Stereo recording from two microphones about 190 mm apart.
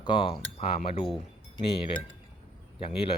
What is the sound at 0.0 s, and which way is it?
Speech, 25° left (ahead or behind).